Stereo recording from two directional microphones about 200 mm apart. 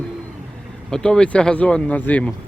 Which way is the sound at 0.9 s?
5° left (ahead or behind).